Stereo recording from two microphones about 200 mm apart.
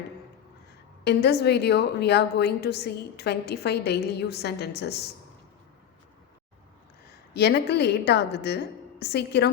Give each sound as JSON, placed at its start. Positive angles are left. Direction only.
{"t": 1.0, "sound": "a woman's voice", "side_deg": 55}
{"t": 7.3, "sound": "a woman's voice", "side_deg": 55}